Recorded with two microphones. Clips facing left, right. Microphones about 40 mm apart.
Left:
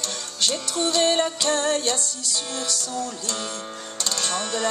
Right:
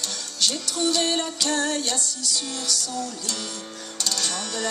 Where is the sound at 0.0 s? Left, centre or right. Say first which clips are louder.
Even; left.